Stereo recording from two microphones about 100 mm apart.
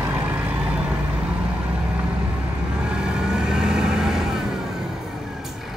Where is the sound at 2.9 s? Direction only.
10° right (ahead or behind).